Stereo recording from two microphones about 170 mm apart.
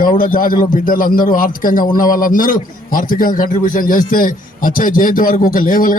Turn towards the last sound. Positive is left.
turn(degrees=55)  # may be behind; listen again after turning